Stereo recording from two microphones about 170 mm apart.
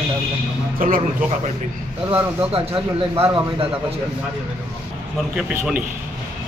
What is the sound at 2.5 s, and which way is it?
Speech, 35° right (ahead or behind).